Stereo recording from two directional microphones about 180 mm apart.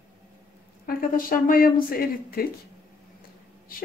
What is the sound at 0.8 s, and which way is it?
Speech, 50° left (ahead or behind).